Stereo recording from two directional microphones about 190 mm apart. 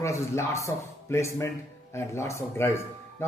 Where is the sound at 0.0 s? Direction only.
15° left (ahead or behind).